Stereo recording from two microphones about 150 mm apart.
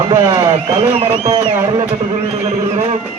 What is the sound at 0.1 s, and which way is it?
Speech, 30° right (ahead or behind).